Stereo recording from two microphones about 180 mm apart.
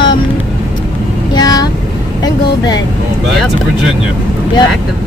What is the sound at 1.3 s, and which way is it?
Vehicle, 20° left (ahead or behind).